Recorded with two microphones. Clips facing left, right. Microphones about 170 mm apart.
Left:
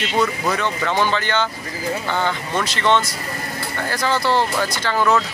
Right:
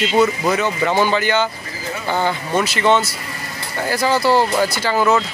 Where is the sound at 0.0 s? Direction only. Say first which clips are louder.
Right 4 dB; 5° right (ahead or behind).